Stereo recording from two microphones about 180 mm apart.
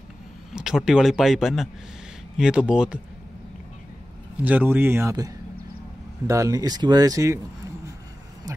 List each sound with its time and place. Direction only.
0.5 s speech: 5° right (ahead or behind)
4.5 s speech: 10° right (ahead or behind)
8.5 s vehicle: 20° right (ahead or behind)